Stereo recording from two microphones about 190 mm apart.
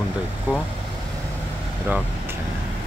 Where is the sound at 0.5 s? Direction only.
10° right (ahead or behind).